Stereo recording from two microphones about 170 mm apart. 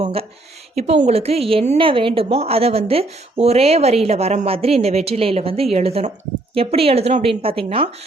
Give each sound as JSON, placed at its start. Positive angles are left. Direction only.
{"t": 0.0, "sound": "a woman's voice", "side_deg": -35}